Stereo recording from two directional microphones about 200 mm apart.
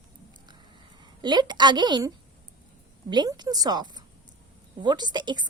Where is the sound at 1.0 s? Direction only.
20° right (ahead or behind).